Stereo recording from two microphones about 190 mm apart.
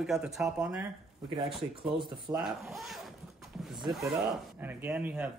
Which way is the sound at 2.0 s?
25° right (ahead or behind).